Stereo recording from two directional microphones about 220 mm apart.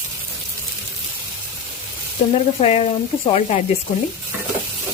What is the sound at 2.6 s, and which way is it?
Speech, 30° left (ahead or behind).